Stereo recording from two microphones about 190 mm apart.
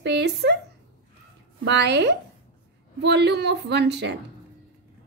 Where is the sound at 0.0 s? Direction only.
65° right (ahead or behind).